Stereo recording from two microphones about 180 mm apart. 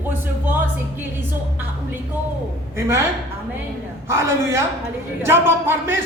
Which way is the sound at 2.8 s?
15° right (ahead or behind).